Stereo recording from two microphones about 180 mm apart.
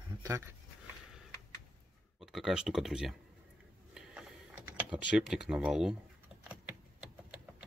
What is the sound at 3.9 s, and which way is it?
Computer keyboard, 5° right (ahead or behind).